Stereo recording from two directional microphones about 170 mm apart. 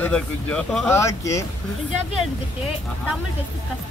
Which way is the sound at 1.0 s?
20° left (ahead or behind).